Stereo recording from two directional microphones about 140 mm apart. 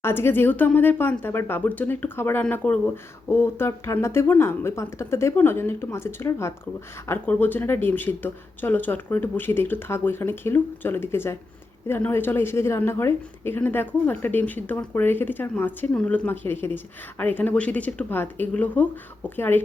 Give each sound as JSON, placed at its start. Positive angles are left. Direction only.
{"t": 0.0, "sound": "a woman's voice", "side_deg": 15}